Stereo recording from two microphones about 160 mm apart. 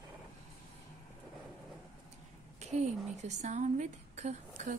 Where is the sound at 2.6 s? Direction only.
45° right (ahead or behind).